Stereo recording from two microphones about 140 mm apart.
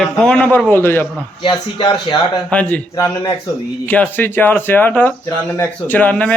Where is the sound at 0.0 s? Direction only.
5° left (ahead or behind).